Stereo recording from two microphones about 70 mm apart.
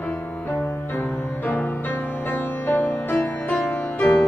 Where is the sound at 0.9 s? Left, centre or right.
Left.